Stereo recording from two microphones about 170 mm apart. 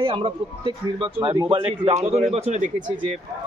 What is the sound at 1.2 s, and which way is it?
Speech, 20° right (ahead or behind).